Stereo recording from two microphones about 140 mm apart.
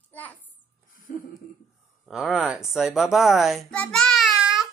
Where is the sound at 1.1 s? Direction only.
70° left (ahead or behind).